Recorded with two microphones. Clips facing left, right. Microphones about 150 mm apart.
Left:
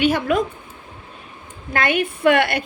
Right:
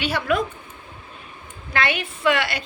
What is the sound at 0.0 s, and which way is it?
Speech, 45° left (ahead or behind).